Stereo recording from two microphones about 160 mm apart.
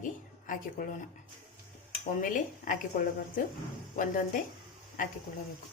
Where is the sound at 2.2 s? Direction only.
55° left (ahead or behind).